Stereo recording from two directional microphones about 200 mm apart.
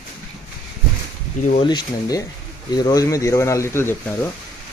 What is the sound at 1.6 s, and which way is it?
Speech, 20° left (ahead or behind).